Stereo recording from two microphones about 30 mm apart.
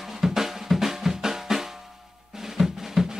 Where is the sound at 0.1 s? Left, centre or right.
Centre.